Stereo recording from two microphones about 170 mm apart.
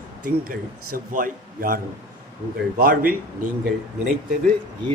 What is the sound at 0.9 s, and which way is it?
A man's voice, 55° right (ahead or behind).